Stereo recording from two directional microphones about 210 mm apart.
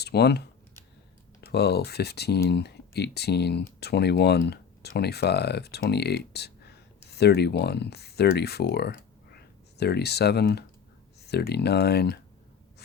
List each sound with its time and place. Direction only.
0.0 s speech: 50° left (ahead or behind)